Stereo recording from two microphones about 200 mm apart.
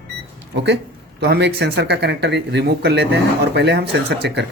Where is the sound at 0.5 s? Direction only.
60° right (ahead or behind).